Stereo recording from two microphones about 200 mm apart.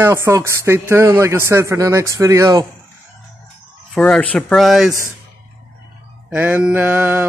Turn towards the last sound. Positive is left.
turn(degrees=-10)  # may be behind; listen again after turning